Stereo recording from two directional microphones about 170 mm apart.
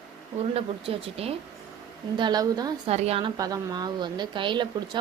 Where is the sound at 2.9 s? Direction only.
40° right (ahead or behind).